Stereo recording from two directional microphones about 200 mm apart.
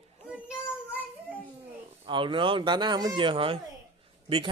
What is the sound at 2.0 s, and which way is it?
Speech, 25° right (ahead or behind).